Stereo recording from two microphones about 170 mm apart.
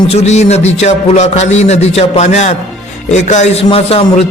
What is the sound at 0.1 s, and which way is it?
A man's voice, 40° left (ahead or behind).